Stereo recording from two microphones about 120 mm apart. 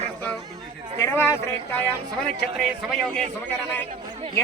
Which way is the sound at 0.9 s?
20° left (ahead or behind).